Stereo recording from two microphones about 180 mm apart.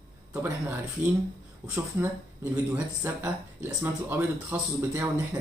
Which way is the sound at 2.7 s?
10° right (ahead or behind).